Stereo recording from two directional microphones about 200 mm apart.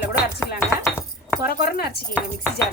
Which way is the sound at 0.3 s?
15° left (ahead or behind).